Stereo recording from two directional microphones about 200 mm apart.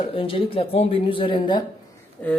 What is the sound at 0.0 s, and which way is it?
Speech, 25° left (ahead or behind).